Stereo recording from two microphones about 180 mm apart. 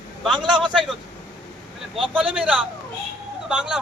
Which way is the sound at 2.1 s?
5° right (ahead or behind).